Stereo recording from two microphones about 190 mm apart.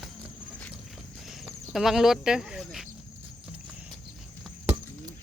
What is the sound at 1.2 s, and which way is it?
Cricket, centre (ahead or behind).